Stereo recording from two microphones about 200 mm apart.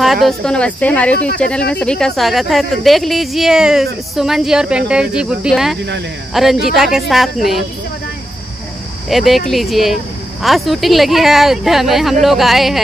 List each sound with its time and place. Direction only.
0.0 s speech: centre (ahead or behind)
9.1 s speech: centre (ahead or behind)